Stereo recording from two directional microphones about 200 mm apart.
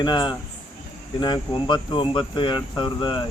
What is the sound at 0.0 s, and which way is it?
Speech, 20° left (ahead or behind).